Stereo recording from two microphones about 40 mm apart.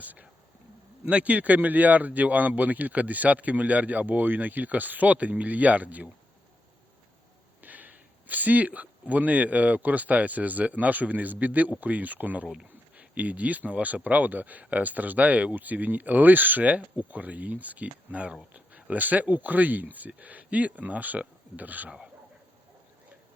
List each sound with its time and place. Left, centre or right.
0.0 s speech: right
7.6 s speech: right
16.6 s speech: right
21.8 s speech: centre